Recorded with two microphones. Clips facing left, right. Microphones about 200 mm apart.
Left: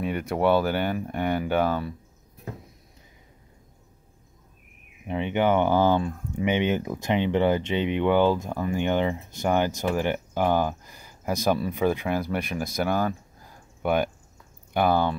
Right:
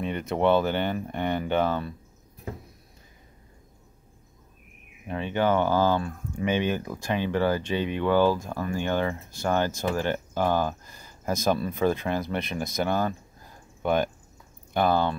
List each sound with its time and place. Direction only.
0.0 s speech: 10° left (ahead or behind)
5.0 s speech: 15° left (ahead or behind)